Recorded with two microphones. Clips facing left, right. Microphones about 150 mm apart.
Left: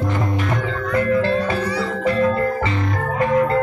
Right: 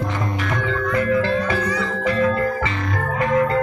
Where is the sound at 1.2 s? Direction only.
30° left (ahead or behind).